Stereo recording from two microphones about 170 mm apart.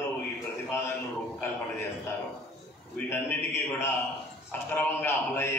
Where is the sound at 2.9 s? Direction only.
15° left (ahead or behind).